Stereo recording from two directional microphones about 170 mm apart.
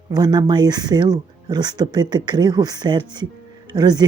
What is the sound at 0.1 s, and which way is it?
Speech, 25° right (ahead or behind).